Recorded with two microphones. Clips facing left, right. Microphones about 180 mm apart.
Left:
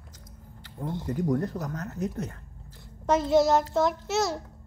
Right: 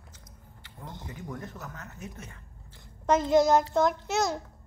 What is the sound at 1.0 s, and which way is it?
Speech, 40° left (ahead or behind).